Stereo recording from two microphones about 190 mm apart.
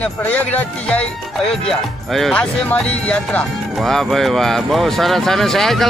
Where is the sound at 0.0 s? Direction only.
10° left (ahead or behind).